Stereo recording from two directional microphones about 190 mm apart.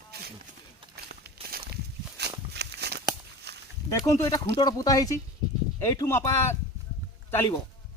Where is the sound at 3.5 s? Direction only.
60° right (ahead or behind).